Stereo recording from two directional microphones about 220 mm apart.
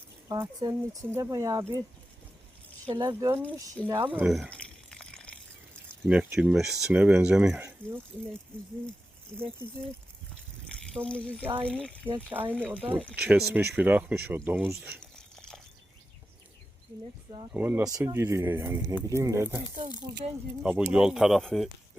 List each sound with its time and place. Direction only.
0.3 s speech: 20° right (ahead or behind)
2.8 s speech: 20° right (ahead or behind)
3.8 s a sound: 10° right (ahead or behind); by 5.3 s 5° left (ahead or behind)
6.1 s speech: 5° right (ahead or behind)
10.7 s speech: 5° left (ahead or behind)
12.3 s speech: 10° right (ahead or behind)
15.0 s a sound: 5° left (ahead or behind)
17.5 s speech: 10° right (ahead or behind)
20.6 s speech: centre (ahead or behind)